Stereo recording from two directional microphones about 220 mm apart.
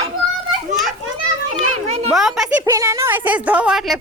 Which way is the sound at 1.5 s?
30° right (ahead or behind).